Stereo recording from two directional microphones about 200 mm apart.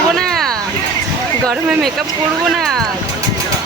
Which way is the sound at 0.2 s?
5° left (ahead or behind).